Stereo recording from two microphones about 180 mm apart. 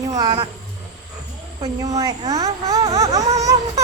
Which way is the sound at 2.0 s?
20° right (ahead or behind).